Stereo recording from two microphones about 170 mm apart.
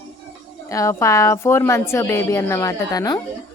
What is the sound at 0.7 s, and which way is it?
A woman's voice, 15° left (ahead or behind).